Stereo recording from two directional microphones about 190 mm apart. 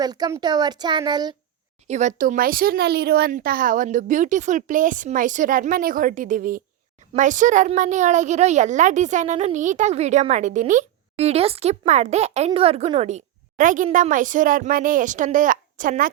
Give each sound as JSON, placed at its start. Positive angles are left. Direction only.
{"t": 0.0, "sound": "speech", "side_deg": -20}
{"t": 1.9, "sound": "a woman's voice", "side_deg": -40}